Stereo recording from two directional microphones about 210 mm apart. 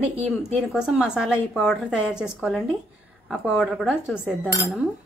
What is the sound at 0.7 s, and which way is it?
A woman's voice, 5° right (ahead or behind).